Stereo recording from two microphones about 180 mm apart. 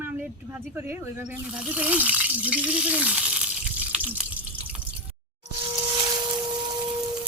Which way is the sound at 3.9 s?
10° right (ahead or behind).